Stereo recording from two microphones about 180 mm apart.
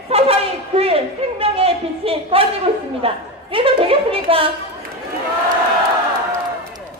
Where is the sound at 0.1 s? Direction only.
35° right (ahead or behind).